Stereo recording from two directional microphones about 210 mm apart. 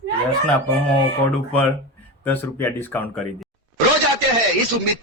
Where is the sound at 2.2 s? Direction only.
10° left (ahead or behind).